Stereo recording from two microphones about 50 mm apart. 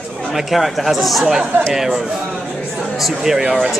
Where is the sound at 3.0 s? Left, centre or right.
Centre.